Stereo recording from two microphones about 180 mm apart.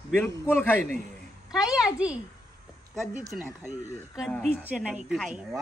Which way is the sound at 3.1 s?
50° right (ahead or behind).